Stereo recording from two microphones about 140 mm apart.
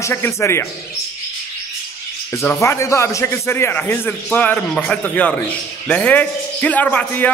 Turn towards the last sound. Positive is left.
turn(degrees=10)  # may be behind; listen again after turning